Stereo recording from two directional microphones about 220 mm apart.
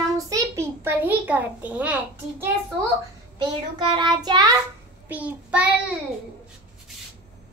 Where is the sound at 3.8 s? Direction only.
20° right (ahead or behind).